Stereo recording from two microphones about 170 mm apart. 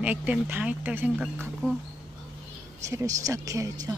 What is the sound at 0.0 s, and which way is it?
Speech, 10° right (ahead or behind).